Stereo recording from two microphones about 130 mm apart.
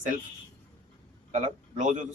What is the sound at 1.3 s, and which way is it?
Speech, 65° right (ahead or behind).